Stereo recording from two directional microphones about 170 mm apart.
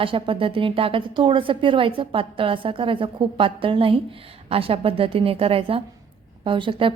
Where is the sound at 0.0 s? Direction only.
30° right (ahead or behind).